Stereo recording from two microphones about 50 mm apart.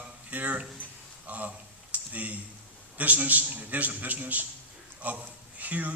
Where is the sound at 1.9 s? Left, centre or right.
Right.